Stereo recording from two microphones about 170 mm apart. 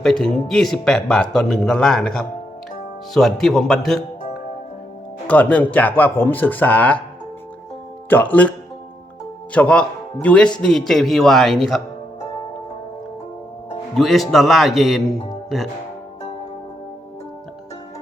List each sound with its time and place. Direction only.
0.0 s speech: 5° left (ahead or behind)
5.3 s speech: 10° left (ahead or behind)
8.1 s speech: 10° left (ahead or behind)
13.9 s speech: centre (ahead or behind)